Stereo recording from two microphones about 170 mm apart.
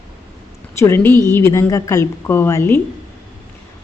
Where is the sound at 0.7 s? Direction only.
15° left (ahead or behind).